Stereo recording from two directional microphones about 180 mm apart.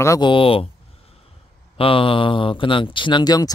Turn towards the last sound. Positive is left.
turn(degrees=20)  # may be behind; listen again after turning